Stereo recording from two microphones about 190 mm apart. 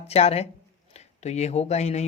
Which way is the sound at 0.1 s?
35° left (ahead or behind).